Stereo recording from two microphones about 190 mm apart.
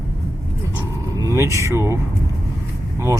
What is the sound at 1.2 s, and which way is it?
Speech, 15° right (ahead or behind).